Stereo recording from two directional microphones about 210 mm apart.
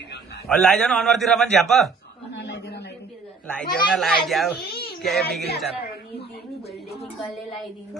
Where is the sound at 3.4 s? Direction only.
5° left (ahead or behind).